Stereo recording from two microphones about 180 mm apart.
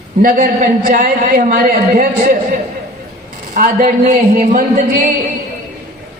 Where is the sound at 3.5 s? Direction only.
50° right (ahead or behind).